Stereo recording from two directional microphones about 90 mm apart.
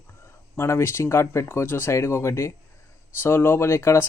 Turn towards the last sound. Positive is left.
turn(degrees=30)  # may be behind; listen again after turning